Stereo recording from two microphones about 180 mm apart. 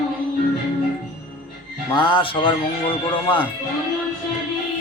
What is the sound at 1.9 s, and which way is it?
Speech, 25° left (ahead or behind).